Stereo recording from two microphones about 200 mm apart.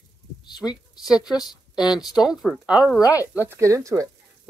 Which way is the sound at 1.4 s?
Centre (ahead or behind).